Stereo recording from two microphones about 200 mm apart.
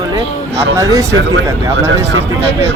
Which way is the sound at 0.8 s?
15° right (ahead or behind).